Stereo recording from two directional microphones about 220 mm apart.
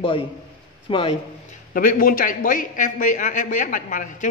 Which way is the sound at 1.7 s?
40° left (ahead or behind).